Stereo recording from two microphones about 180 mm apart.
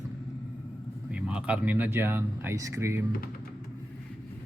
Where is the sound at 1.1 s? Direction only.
5° right (ahead or behind).